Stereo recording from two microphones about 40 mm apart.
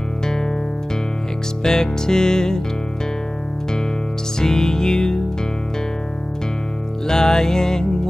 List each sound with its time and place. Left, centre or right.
1.6 s music: centre
4.4 s music: centre
7.1 s music: centre